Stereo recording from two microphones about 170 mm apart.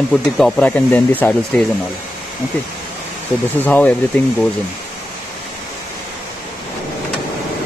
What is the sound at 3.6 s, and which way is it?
Speech, 10° left (ahead or behind).